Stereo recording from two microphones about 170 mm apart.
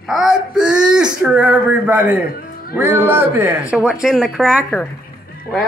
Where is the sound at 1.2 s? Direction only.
5° right (ahead or behind).